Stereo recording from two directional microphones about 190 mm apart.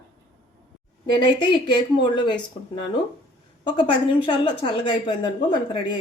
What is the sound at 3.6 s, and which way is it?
Speech, 25° left (ahead or behind).